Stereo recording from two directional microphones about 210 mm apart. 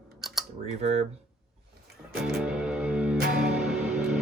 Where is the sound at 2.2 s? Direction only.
Centre (ahead or behind).